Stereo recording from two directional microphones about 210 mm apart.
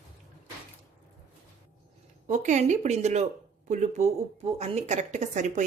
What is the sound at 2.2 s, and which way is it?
A woman's voice, 35° right (ahead or behind).